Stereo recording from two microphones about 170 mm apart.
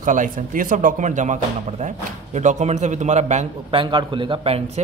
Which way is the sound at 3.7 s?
30° right (ahead or behind).